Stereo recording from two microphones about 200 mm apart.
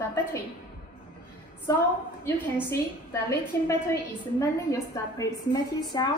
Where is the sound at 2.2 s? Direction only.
10° left (ahead or behind).